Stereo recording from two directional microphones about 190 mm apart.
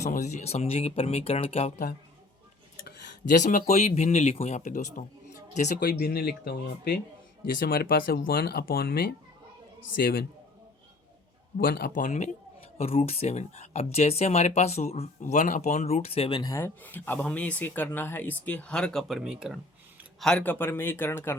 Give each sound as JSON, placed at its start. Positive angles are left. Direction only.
{"t": 0.0, "sound": "speech", "side_deg": 40}
{"t": 11.5, "sound": "speech", "side_deg": 50}